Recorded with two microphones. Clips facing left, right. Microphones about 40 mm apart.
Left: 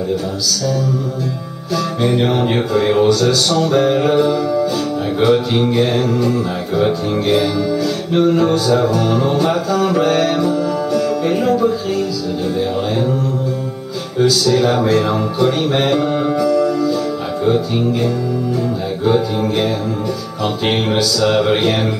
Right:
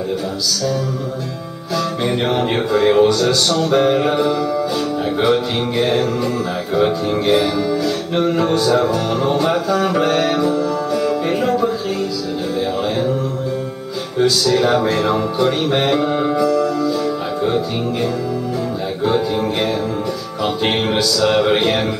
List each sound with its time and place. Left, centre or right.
2.0 s music: centre
14.1 s music: centre
19.0 s music: centre